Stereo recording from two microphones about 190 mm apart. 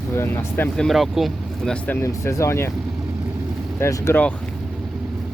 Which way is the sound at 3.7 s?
15° left (ahead or behind).